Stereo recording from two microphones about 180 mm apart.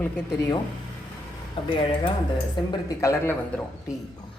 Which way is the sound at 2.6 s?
15° left (ahead or behind).